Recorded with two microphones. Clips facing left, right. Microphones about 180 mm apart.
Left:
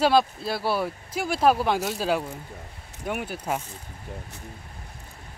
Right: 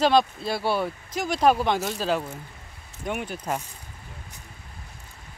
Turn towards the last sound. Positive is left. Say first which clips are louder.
# even
turn(degrees=5)  # may be behind; listen again after turning